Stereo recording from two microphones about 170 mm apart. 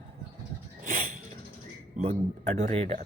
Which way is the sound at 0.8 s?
50° right (ahead or behind).